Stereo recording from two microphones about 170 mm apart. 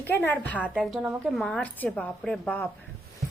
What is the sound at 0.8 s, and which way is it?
A woman's voice, centre (ahead or behind).